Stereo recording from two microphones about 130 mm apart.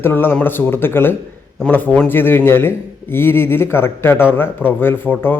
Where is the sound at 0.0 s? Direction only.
15° left (ahead or behind).